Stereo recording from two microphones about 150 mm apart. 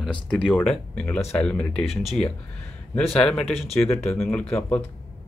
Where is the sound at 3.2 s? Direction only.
5° left (ahead or behind).